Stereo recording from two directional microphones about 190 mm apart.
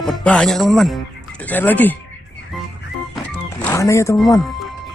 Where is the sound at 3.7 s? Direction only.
15° left (ahead or behind).